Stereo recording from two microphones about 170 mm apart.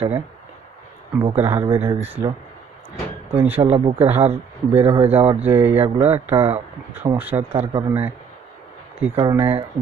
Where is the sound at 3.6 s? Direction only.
35° right (ahead or behind).